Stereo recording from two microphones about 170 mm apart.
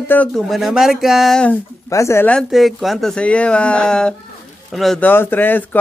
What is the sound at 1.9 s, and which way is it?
Speech, 15° left (ahead or behind).